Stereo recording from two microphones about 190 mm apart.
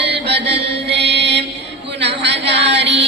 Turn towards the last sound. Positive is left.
turn(degrees=-65)  # may be behind; listen again after turning